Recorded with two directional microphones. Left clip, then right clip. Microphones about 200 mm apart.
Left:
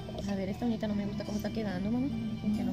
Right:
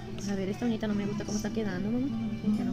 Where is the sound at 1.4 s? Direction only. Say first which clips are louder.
Right 1 dB; 25° left (ahead or behind).